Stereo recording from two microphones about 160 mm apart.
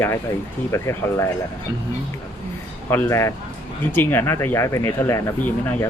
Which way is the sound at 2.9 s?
15° left (ahead or behind).